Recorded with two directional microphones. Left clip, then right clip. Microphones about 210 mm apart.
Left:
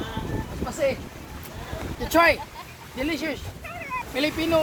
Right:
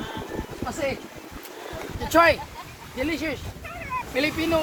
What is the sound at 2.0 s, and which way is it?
Speech, 30° left (ahead or behind).